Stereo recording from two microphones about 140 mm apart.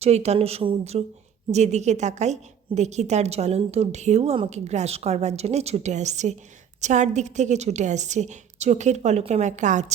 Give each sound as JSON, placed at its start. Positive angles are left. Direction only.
{"t": 0.0, "sound": "a woman's voice", "side_deg": -50}